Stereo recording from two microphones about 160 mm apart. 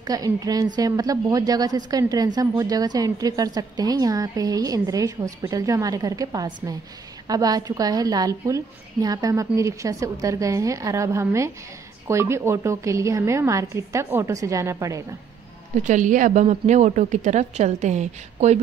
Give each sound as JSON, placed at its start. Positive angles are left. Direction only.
{"t": 0.0, "sound": "a woman's voice", "side_deg": -25}
{"t": 15.9, "sound": "a woman's voice", "side_deg": -50}